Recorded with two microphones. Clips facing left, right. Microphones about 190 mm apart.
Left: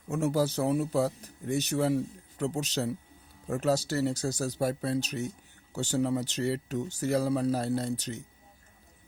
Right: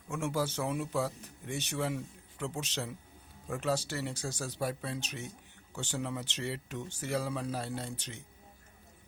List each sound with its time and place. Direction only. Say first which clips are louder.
0.1 s speech: left 6 dB; 40° left (ahead or behind)